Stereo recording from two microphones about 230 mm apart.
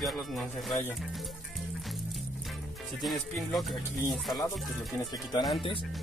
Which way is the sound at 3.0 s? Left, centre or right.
Centre.